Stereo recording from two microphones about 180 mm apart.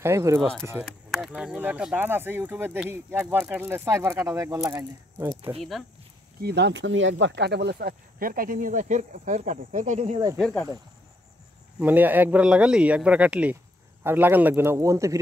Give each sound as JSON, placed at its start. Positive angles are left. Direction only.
{"t": 0.0, "sound": "speech", "side_deg": -15}
{"t": 0.8, "sound": "speech", "side_deg": 0}
{"t": 5.6, "sound": "speech", "side_deg": 0}
{"t": 6.4, "sound": "speech", "side_deg": -70}
{"t": 11.8, "sound": "speech", "side_deg": -10}